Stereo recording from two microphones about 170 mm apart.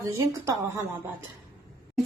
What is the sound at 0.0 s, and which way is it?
Speech, 20° right (ahead or behind).